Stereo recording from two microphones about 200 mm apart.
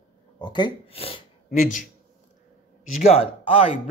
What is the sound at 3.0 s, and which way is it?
Speech, 30° left (ahead or behind).